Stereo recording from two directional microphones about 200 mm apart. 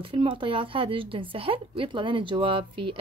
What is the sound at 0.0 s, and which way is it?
Speech, 25° right (ahead or behind).